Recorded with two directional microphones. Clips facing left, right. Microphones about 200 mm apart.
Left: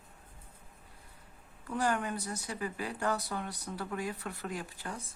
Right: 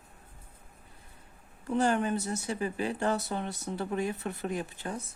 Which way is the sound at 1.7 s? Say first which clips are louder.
Right 5 dB; 25° right (ahead or behind).